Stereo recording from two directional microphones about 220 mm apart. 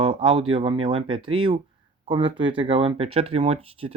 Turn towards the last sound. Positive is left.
turn(degrees=-25)  # may be behind; listen again after turning